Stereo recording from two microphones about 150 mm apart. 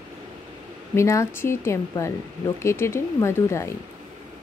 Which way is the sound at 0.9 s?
20° left (ahead or behind).